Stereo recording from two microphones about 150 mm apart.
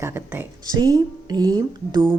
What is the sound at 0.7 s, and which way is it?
A woman's voice, 25° right (ahead or behind).